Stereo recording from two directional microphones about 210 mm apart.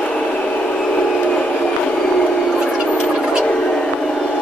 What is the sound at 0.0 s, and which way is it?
Train, 5° left (ahead or behind).